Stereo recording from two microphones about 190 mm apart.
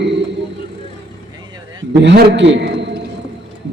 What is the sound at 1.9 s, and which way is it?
A man's voice, 65° right (ahead or behind).